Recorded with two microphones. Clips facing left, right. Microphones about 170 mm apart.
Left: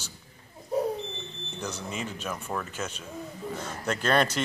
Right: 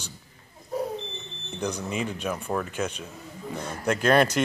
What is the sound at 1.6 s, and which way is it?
Speech, 10° right (ahead or behind).